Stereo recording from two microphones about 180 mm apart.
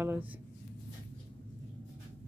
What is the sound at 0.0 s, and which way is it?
Speech, 10° right (ahead or behind).